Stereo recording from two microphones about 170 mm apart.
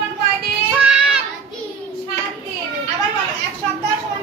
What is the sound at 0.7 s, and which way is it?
Child singing, 5° right (ahead or behind).